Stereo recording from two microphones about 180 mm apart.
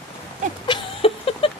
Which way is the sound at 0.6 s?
30° left (ahead or behind).